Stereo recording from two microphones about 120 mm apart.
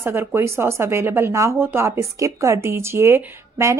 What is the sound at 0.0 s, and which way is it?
Speech, 20° right (ahead or behind).